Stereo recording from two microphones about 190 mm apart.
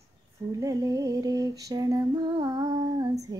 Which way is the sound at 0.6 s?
15° right (ahead or behind).